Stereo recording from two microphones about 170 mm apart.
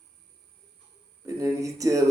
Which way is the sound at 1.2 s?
20° right (ahead or behind).